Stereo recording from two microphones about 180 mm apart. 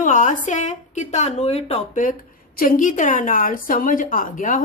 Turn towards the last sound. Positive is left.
turn(degrees=45)  # may be behind; listen again after turning